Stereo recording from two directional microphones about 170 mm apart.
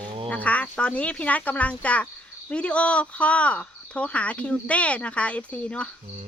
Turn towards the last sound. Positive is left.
turn(degrees=5)  # may be behind; listen again after turning